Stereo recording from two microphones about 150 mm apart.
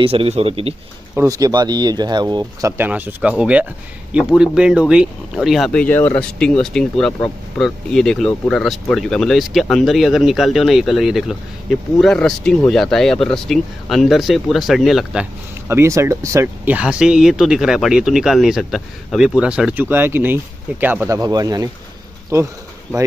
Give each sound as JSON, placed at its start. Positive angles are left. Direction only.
{"t": 0.0, "sound": "speech", "side_deg": -40}
{"t": 1.1, "sound": "speech", "side_deg": -20}
{"t": 2.8, "sound": "speech", "side_deg": -10}
{"t": 15.7, "sound": "speech", "side_deg": -20}
{"t": 21.2, "sound": "speech", "side_deg": -25}